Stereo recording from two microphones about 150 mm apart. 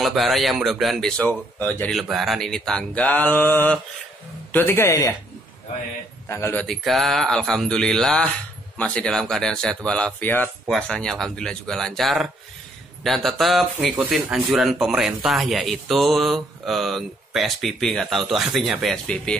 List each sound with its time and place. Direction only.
0.0 s speech: centre (ahead or behind)
2.0 s a man's voice: centre (ahead or behind); by 5.1 s 15° left (ahead or behind)
6.2 s a man's voice: 15° left (ahead or behind)